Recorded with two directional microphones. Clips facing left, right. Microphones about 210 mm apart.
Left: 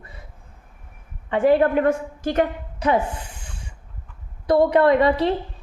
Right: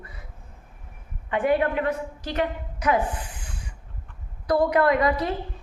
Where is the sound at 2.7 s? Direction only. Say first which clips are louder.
Left 3 dB; 30° left (ahead or behind).